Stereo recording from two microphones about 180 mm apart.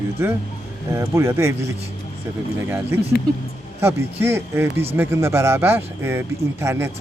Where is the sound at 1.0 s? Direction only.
15° right (ahead or behind).